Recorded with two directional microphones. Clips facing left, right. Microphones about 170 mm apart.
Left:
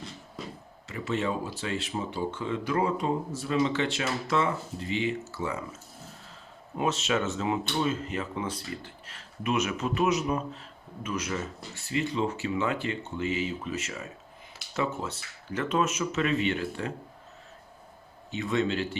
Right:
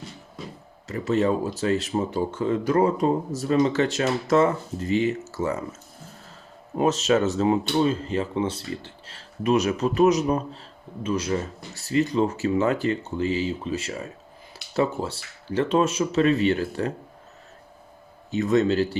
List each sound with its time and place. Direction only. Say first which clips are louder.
0.9 s speech: right 8 dB; 40° right (ahead or behind)
6.7 s speech: right 7 dB; 40° right (ahead or behind)
18.3 s speech: right 7 dB; 40° right (ahead or behind)